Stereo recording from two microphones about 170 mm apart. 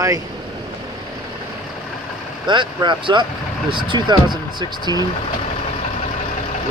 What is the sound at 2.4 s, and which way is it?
Speech, 25° right (ahead or behind).